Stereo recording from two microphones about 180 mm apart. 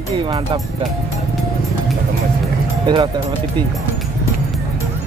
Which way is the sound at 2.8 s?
25° right (ahead or behind).